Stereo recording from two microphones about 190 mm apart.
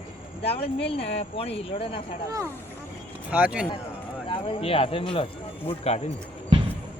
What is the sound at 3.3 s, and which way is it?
Speech, 5° right (ahead or behind).